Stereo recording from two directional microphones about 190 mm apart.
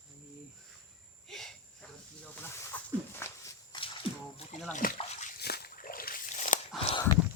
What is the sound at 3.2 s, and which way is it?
Walk, 15° left (ahead or behind).